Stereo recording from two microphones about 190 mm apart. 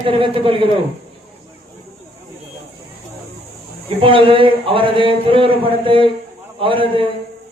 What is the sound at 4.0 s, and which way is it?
Speech, 25° right (ahead or behind).